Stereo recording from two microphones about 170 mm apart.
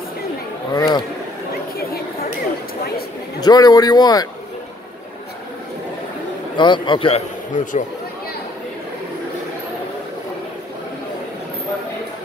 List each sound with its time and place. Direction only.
0.7 s a man's voice: 20° left (ahead or behind)
3.3 s a man's voice: 25° left (ahead or behind)
6.5 s a man's voice: 25° left (ahead or behind); by 7.8 s 45° left (ahead or behind)